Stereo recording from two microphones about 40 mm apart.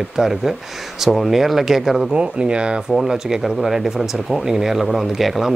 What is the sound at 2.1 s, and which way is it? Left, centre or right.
Speech, right.